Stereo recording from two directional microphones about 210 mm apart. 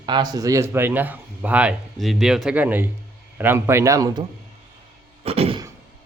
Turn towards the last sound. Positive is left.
turn(degrees=-30)  # may be behind; listen again after turning